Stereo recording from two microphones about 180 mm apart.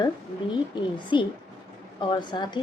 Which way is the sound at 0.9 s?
25° left (ahead or behind).